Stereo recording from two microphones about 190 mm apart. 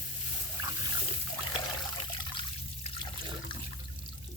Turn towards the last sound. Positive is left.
turn(degrees=25)  # may be behind; listen again after turning